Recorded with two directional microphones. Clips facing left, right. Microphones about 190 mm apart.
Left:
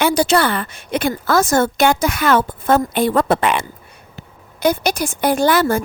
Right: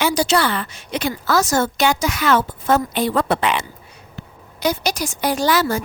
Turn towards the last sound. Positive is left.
turn(degrees=55)  # may be behind; listen again after turning